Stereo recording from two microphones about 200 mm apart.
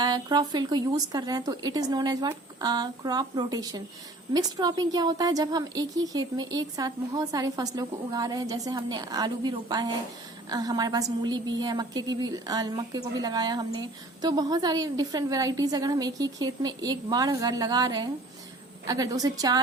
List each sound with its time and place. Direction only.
0.0 s a woman's voice: 20° right (ahead or behind)